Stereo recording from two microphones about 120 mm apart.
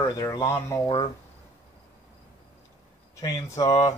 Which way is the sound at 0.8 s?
40° left (ahead or behind).